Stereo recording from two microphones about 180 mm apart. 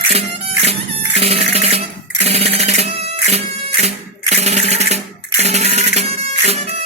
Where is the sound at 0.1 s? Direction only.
35° right (ahead or behind).